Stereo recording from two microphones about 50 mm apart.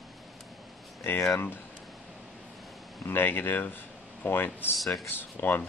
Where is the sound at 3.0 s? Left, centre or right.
Left.